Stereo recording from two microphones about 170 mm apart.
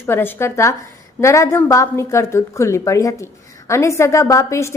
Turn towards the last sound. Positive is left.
turn(degrees=15)  # may be behind; listen again after turning